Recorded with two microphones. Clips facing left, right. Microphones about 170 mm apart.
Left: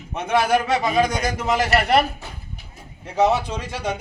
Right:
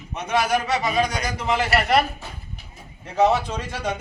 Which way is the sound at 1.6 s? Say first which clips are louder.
Left 2 dB; 40° left (ahead or behind).